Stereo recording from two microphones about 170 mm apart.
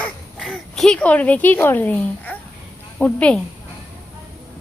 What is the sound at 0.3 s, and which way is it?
A woman's voice, centre (ahead or behind).